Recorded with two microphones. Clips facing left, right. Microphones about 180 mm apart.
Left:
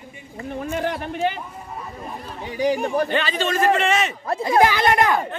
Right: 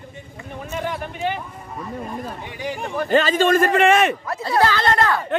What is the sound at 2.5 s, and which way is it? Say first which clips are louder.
Speech: left 11 dB; 40° left (ahead or behind).